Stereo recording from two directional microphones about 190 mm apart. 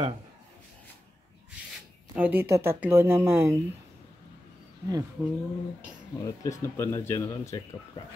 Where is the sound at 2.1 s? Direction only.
10° right (ahead or behind).